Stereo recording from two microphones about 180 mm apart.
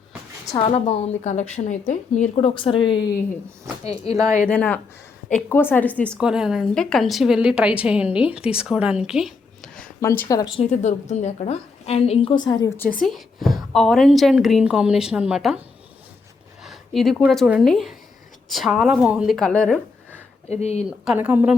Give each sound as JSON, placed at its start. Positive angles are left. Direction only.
{"t": 0.5, "sound": "a woman's voice", "side_deg": 35}
{"t": 4.1, "sound": "speech", "side_deg": -20}
{"t": 4.4, "sound": "a woman's voice", "side_deg": 5}
{"t": 6.1, "sound": "a woman's voice", "side_deg": -5}
{"t": 10.0, "sound": "a woman's voice", "side_deg": 15}
{"t": 12.7, "sound": "a woman's voice", "side_deg": 10}
{"t": 13.1, "sound": "a woman's voice", "side_deg": 0}
{"t": 16.6, "sound": "a woman's voice", "side_deg": 0}
{"t": 20.5, "sound": "a woman's voice", "side_deg": 35}
{"t": 20.8, "sound": "speech", "side_deg": -5}